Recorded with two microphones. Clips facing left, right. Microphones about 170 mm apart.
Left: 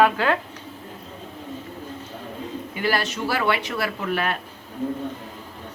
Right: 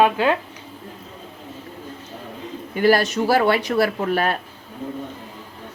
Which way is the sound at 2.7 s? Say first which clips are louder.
Right 8 dB; 45° right (ahead or behind).